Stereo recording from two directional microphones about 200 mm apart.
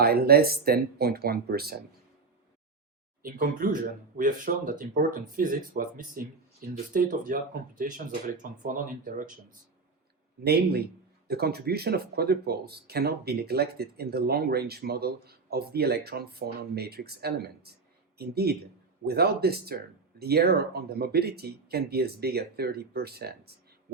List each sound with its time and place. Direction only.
0.0 s speech: 50° right (ahead or behind)
3.2 s speech: 45° right (ahead or behind)
10.4 s speech: 50° right (ahead or behind)